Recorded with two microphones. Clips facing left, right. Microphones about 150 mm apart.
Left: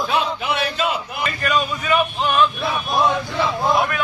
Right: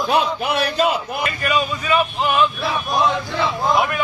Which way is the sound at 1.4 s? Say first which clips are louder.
Left 1 dB; 5° right (ahead or behind).